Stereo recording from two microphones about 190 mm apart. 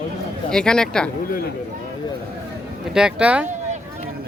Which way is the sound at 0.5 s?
5° left (ahead or behind).